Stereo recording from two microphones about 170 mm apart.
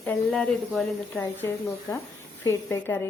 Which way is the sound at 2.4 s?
15° left (ahead or behind).